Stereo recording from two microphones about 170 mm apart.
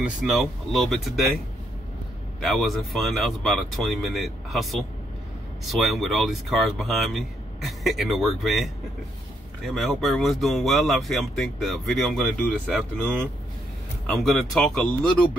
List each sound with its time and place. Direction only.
0.0 s speech: centre (ahead or behind)
2.4 s speech: centre (ahead or behind)
9.7 s speech: centre (ahead or behind)